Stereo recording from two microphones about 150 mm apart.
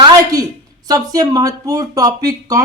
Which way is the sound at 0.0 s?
25° right (ahead or behind).